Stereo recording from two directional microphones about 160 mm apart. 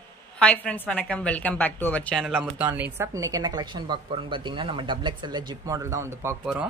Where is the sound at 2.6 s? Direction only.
10° right (ahead or behind).